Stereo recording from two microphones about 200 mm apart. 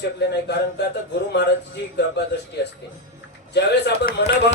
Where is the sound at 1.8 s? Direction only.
60° left (ahead or behind).